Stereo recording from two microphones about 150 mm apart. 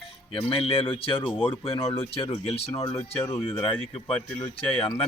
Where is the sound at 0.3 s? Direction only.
40° left (ahead or behind).